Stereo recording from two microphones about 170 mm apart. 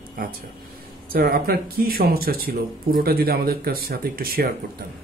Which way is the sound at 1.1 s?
60° right (ahead or behind).